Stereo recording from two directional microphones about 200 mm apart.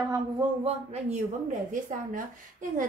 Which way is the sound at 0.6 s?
35° right (ahead or behind).